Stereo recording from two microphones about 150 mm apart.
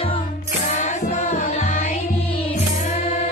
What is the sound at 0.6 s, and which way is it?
Music, 55° left (ahead or behind).